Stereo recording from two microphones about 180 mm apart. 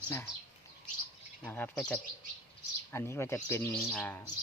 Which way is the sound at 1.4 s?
10° left (ahead or behind).